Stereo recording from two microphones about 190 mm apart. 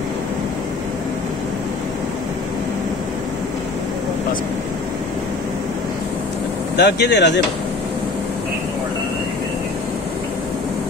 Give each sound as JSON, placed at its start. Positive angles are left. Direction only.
{"t": 6.8, "sound": "speech", "side_deg": 60}